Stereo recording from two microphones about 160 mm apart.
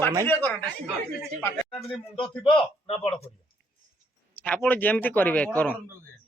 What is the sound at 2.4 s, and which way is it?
Speech, 35° left (ahead or behind).